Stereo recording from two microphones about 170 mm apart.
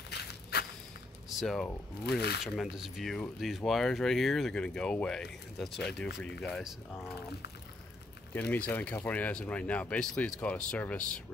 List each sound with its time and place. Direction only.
0.1 s walk: 75° left (ahead or behind)
1.4 s speech: centre (ahead or behind)
2.0 s speech: 70° left (ahead or behind)
2.4 s speech: centre (ahead or behind)
8.3 s speech: 10° left (ahead or behind)